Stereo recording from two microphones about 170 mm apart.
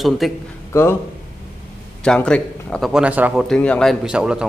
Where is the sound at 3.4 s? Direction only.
5° left (ahead or behind).